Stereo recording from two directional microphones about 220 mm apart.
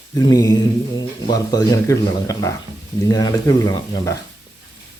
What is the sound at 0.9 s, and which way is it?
Speech, 20° left (ahead or behind).